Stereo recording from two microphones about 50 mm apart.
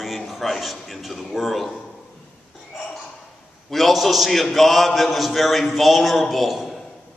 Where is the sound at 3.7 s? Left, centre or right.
Centre.